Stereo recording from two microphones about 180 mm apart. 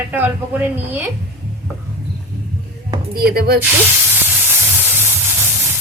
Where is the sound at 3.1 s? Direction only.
60° right (ahead or behind).